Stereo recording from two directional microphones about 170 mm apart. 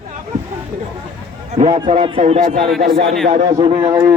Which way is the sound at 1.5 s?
40° right (ahead or behind).